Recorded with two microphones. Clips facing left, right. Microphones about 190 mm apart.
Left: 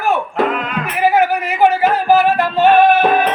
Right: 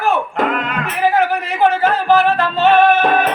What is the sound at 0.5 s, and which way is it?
Music, centre (ahead or behind).